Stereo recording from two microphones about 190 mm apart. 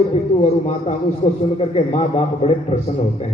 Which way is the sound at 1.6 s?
35° left (ahead or behind).